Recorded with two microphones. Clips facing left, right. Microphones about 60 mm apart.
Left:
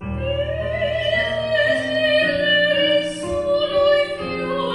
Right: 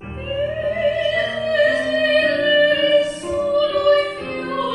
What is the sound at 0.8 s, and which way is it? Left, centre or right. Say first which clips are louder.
Music: right 2 dB; centre.